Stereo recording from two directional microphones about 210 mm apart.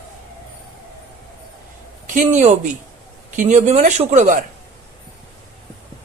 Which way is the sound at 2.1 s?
35° right (ahead or behind).